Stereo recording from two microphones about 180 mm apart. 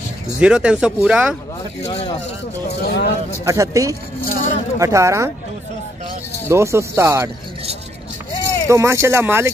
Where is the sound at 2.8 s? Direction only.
65° left (ahead or behind).